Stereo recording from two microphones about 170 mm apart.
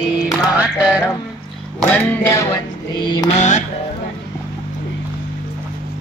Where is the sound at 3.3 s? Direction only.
45° left (ahead or behind).